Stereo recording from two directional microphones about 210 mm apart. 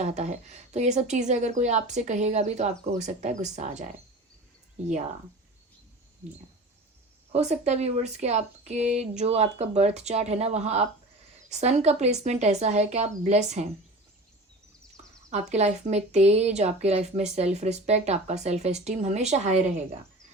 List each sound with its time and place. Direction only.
0.0 s speech: 35° right (ahead or behind)
7.3 s speech: 30° right (ahead or behind)
15.3 s speech: 35° right (ahead or behind)